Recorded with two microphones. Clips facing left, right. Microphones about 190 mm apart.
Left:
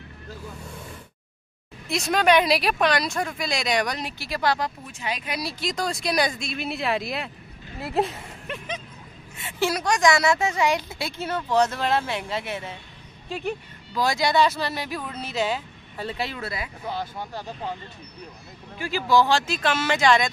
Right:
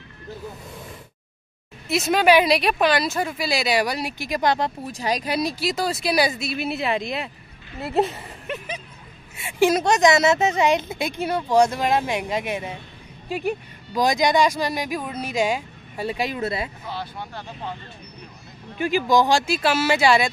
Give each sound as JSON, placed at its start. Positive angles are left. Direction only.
{"t": 1.9, "sound": "speech", "side_deg": -5}
{"t": 5.6, "sound": "speech", "side_deg": -5}
{"t": 16.9, "sound": "speech", "side_deg": 45}
{"t": 18.8, "sound": "speech", "side_deg": -15}